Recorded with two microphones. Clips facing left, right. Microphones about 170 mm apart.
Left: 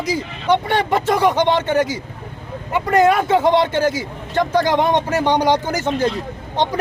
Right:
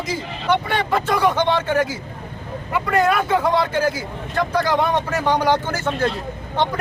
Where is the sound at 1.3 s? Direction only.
20° left (ahead or behind).